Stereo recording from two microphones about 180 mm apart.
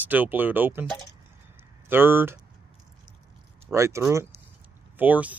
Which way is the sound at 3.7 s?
15° right (ahead or behind).